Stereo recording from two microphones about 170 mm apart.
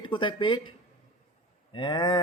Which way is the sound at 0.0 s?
30° left (ahead or behind).